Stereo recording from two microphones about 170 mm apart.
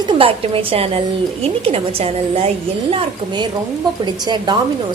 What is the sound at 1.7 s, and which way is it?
A woman's voice, 35° right (ahead or behind).